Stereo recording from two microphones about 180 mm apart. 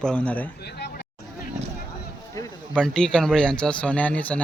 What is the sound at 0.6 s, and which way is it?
Vehicle, 65° left (ahead or behind).